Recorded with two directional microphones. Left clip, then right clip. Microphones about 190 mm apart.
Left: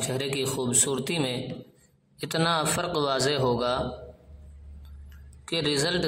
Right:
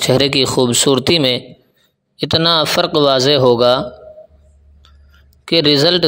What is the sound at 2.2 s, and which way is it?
Speech, 30° right (ahead or behind).